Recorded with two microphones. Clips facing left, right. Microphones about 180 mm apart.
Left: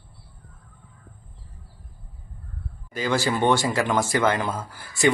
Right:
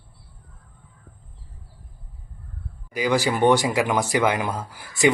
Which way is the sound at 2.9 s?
15° right (ahead or behind).